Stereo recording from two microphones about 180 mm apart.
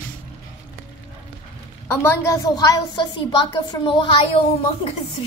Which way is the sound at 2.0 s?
15° left (ahead or behind).